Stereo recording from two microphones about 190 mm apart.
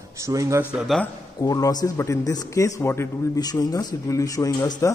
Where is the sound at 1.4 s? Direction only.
20° left (ahead or behind).